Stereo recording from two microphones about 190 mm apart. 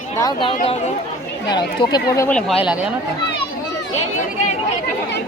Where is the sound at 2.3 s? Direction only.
5° left (ahead or behind).